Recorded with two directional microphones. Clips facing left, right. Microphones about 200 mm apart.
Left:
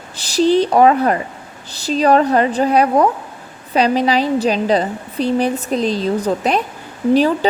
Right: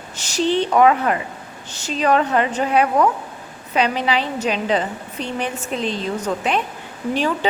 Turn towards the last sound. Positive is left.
turn(degrees=35)  # may be behind; listen again after turning